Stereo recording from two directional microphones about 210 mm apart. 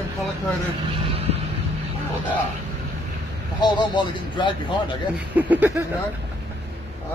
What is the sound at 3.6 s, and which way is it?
Speech, 20° left (ahead or behind).